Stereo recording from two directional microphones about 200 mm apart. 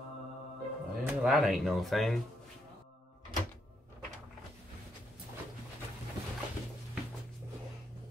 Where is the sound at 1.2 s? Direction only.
Centre (ahead or behind).